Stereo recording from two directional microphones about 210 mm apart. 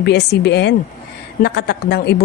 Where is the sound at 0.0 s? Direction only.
50° left (ahead or behind).